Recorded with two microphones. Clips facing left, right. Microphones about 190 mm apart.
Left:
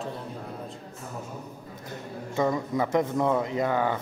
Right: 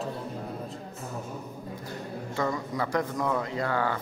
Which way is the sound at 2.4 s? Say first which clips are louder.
Left 4 dB; 20° left (ahead or behind).